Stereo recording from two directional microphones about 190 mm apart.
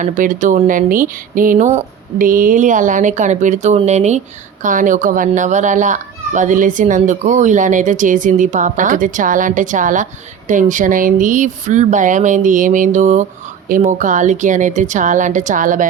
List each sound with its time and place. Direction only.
0.0 s a child's voice: 45° right (ahead or behind)